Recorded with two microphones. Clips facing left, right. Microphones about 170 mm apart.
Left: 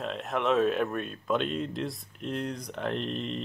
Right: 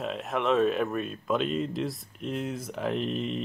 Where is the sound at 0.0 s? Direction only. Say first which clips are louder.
Right 1 dB; centre (ahead or behind).